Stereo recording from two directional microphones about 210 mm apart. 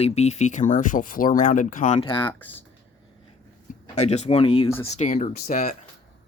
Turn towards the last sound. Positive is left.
turn(degrees=40)  # may be behind; listen again after turning